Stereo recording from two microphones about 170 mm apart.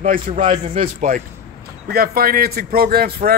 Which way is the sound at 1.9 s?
60° right (ahead or behind).